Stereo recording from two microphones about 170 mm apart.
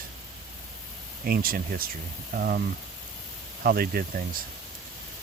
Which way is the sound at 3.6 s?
60° right (ahead or behind).